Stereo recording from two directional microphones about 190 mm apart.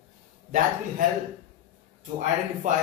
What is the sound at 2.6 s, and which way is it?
Speech, 40° right (ahead or behind).